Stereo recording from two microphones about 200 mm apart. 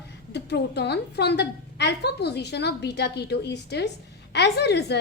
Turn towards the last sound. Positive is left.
turn(degrees=55)  # may be behind; listen again after turning